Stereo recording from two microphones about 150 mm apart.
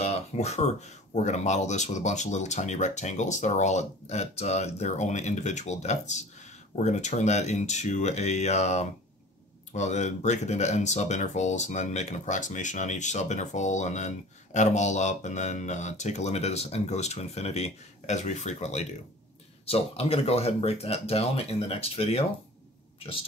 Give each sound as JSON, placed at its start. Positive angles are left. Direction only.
{"t": 0.0, "sound": "speech", "side_deg": 45}